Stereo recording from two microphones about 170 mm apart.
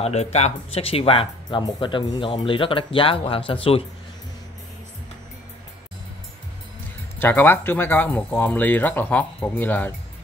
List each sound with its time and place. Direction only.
0.0 s speech: 40° left (ahead or behind)
7.2 s speech: 10° left (ahead or behind)